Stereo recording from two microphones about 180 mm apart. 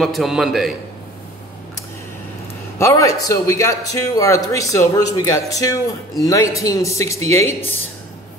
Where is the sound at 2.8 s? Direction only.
15° left (ahead or behind).